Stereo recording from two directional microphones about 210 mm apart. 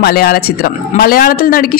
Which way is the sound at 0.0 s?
45° left (ahead or behind).